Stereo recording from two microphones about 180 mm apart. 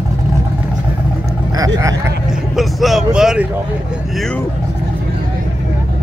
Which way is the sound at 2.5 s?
Centre (ahead or behind).